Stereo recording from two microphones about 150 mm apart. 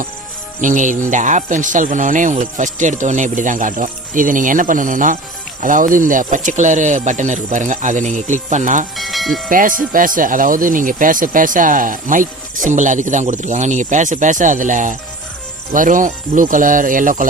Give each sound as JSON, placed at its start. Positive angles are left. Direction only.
{"t": 0.6, "sound": "speech", "side_deg": -55}
{"t": 9.0, "sound": "music", "side_deg": 0}
{"t": 9.5, "sound": "speech", "side_deg": -65}